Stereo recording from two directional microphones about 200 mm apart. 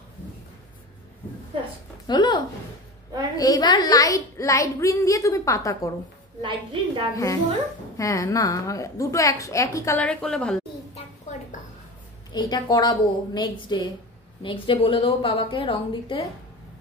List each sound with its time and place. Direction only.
2.0 s a woman's voice: 20° left (ahead or behind)
6.4 s a woman's voice: 25° right (ahead or behind)
8.0 s a woman's voice: 15° left (ahead or behind)
12.3 s a woman's voice: 20° left (ahead or behind)